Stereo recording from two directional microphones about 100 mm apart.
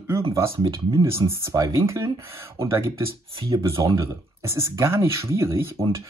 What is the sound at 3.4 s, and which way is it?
Speech, 35° right (ahead or behind).